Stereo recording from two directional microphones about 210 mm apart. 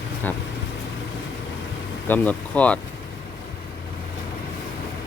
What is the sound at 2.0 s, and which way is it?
Speech, 5° left (ahead or behind).